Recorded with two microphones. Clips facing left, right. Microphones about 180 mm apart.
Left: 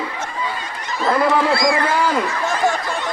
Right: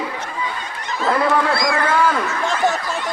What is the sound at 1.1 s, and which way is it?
Speech, centre (ahead or behind).